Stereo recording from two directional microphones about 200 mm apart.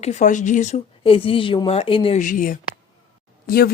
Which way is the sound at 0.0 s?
35° left (ahead or behind).